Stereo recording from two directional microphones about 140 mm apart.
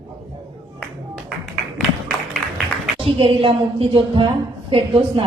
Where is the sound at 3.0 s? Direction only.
40° right (ahead or behind).